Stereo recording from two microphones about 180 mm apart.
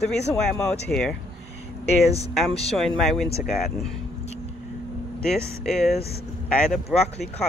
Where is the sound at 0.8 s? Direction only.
5° left (ahead or behind).